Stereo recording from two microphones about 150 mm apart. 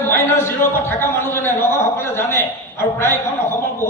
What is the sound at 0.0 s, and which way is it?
A man's voice, 15° left (ahead or behind).